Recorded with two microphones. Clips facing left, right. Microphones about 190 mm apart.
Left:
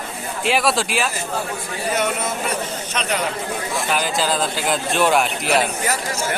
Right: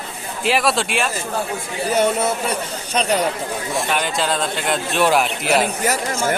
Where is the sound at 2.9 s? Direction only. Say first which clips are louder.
Right 5 dB; 35° right (ahead or behind).